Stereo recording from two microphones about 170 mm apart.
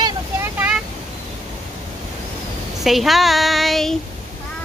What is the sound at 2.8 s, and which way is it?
Speech, centre (ahead or behind).